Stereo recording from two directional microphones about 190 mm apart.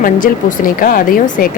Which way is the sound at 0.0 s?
45° left (ahead or behind).